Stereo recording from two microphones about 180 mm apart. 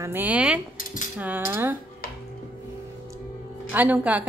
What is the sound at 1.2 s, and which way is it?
Speech, 10° right (ahead or behind).